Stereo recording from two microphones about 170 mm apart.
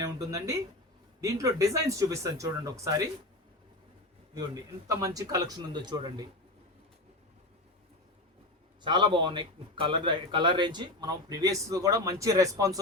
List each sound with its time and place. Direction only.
0.0 s a man's voice: 20° right (ahead or behind)
4.4 s a man's voice: 20° right (ahead or behind)
8.8 s a man's voice: 25° right (ahead or behind)